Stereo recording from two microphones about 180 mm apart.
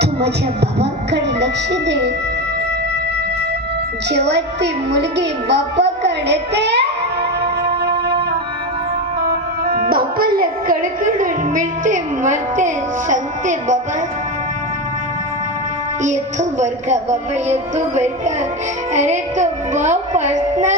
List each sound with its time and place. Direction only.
0.0 s speech: 70° right (ahead or behind)
4.1 s music: 70° right (ahead or behind)
9.2 s speech: 55° right (ahead or behind)
16.0 s music: 40° right (ahead or behind)